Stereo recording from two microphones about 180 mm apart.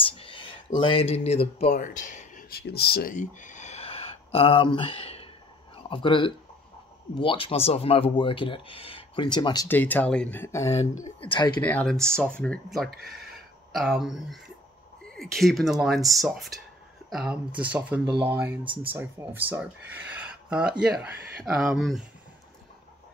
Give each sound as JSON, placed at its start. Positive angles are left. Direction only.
{"t": 0.0, "sound": "a sound", "side_deg": 30}
{"t": 0.7, "sound": "speech", "side_deg": 30}
{"t": 9.7, "sound": "speech", "side_deg": 10}
{"t": 10.7, "sound": "speech", "side_deg": 35}
{"t": 11.6, "sound": "speech", "side_deg": 5}
{"t": 18.6, "sound": "speech", "side_deg": -30}
{"t": 18.9, "sound": "speech", "side_deg": -15}